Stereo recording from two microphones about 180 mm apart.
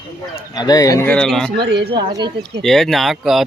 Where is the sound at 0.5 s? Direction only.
20° left (ahead or behind); by 1.6 s centre (ahead or behind).